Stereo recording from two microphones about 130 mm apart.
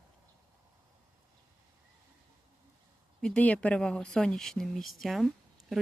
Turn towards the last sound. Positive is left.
turn(degrees=0)  # may be behind; listen again after turning